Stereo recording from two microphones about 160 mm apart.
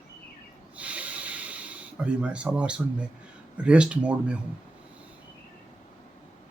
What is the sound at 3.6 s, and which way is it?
Speech, 5° right (ahead or behind).